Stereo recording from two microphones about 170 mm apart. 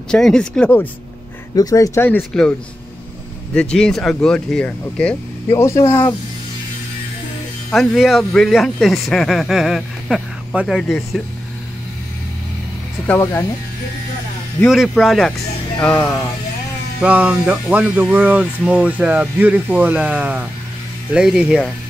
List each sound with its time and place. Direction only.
0.1 s speech: 5° left (ahead or behind)
1.5 s speech: 20° left (ahead or behind)
3.5 s speech: 5° left (ahead or behind)
5.5 s speech: 15° left (ahead or behind)
7.7 s speech: centre (ahead or behind)
13.0 s speech: 10° left (ahead or behind)
14.6 s speech: centre (ahead or behind)
17.0 s speech: 10° right (ahead or behind)